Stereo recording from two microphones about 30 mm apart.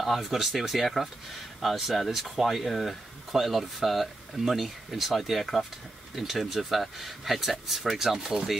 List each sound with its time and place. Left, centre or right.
0.0 s speech: centre
3.3 s speech: centre